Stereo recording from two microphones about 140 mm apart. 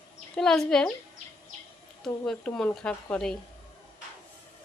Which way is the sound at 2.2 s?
5° left (ahead or behind).